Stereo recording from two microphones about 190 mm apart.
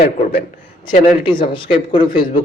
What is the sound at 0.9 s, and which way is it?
Speech, 25° left (ahead or behind).